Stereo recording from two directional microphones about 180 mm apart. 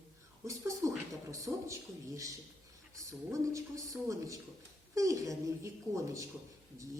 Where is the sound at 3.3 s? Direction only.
15° right (ahead or behind).